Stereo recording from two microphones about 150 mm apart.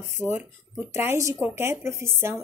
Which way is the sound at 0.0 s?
15° right (ahead or behind).